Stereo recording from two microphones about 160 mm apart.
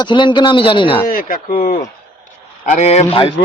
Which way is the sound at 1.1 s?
65° left (ahead or behind).